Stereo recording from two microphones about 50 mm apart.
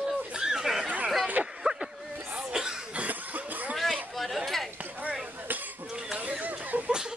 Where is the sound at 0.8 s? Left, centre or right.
Right.